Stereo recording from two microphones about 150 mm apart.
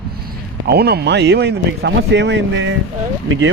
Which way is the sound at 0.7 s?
90° right.